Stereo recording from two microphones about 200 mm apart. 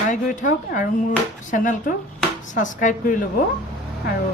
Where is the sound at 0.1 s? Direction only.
40° left (ahead or behind).